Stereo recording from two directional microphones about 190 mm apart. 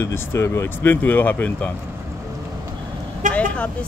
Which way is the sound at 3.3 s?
5° left (ahead or behind).